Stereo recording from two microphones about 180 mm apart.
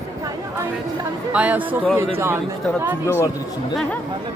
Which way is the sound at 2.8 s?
10° right (ahead or behind).